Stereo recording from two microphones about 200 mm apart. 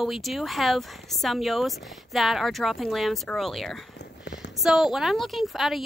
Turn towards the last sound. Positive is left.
turn(degrees=0)  # may be behind; listen again after turning